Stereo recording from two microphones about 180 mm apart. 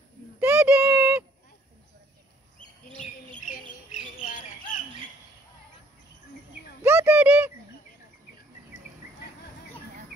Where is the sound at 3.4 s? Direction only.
40° left (ahead or behind).